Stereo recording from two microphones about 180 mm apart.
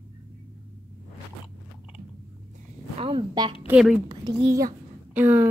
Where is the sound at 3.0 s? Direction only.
30° right (ahead or behind).